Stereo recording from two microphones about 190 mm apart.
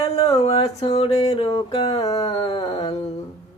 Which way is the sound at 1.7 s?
30° left (ahead or behind).